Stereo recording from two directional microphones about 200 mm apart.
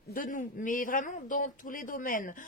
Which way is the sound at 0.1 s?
40° left (ahead or behind).